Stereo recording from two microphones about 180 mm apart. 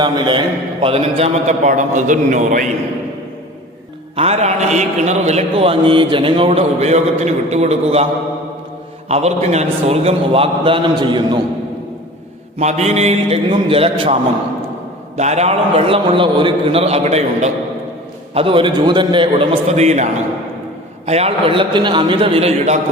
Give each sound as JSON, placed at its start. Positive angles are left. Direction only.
{"t": 0.0, "sound": "a man's voice", "side_deg": -25}
{"t": 4.1, "sound": "a man's voice", "side_deg": -35}
{"t": 9.0, "sound": "a man's voice", "side_deg": -35}
{"t": 12.5, "sound": "a man's voice", "side_deg": -40}
{"t": 21.1, "sound": "a man's voice", "side_deg": -35}